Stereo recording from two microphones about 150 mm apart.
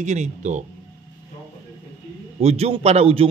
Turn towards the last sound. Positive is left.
turn(degrees=-40)  # may be behind; listen again after turning